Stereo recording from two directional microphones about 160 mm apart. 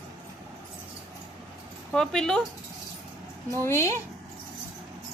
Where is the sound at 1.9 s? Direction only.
5° left (ahead or behind).